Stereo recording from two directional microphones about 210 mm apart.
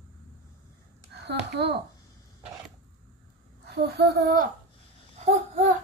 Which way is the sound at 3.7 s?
50° right (ahead or behind).